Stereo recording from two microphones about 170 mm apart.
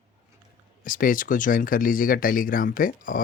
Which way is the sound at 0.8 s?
55° left (ahead or behind).